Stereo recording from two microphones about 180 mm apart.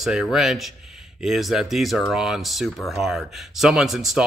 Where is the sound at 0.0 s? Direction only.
5° right (ahead or behind).